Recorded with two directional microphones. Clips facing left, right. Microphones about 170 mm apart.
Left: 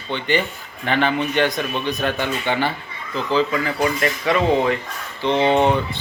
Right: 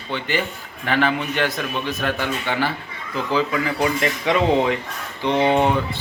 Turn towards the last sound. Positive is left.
turn(degrees=-5)  # may be behind; listen again after turning